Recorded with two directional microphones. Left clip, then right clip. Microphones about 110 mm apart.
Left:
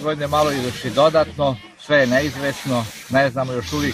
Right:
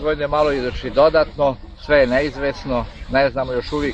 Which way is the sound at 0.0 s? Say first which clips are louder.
Right 1 dB; 20° right (ahead or behind).